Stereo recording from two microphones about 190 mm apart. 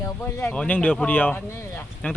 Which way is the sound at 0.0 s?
15° left (ahead or behind).